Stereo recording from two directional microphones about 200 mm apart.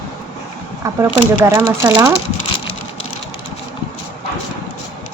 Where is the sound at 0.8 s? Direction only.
15° right (ahead or behind).